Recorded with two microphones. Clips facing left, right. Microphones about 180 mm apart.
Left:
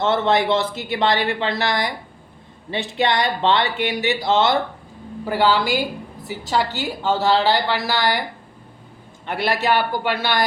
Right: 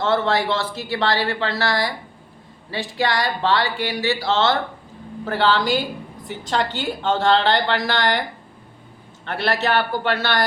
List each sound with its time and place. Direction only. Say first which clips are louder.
0.0 s a woman's voice: left 1 dB; 20° left (ahead or behind)
9.2 s a woman's voice: left 1 dB; 15° left (ahead or behind)